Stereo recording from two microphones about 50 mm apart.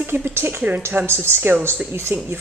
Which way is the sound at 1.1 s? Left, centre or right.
Right.